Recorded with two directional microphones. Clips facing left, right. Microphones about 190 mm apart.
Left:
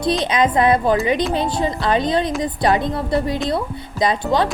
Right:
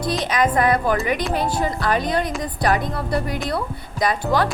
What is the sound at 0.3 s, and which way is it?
Speech, 25° left (ahead or behind).